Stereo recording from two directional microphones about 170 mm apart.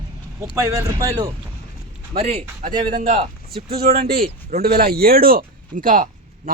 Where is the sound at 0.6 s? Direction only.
15° right (ahead or behind).